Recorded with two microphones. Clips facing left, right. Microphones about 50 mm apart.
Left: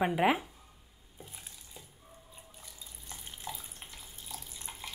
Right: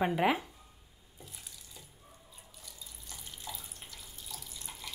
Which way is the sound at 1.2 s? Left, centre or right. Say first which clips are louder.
Left 1 dB; left.